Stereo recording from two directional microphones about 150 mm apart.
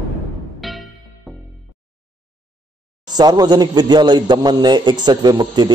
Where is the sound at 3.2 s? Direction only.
30° right (ahead or behind).